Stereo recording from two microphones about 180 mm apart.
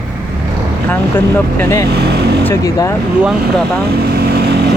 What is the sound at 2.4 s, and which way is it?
Speech, 20° left (ahead or behind).